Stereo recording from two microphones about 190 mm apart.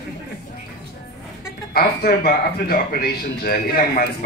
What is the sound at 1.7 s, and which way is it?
A woman's voice, 55° left (ahead or behind).